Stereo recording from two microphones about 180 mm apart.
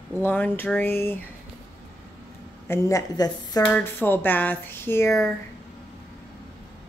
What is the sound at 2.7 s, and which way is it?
Speech, 15° left (ahead or behind).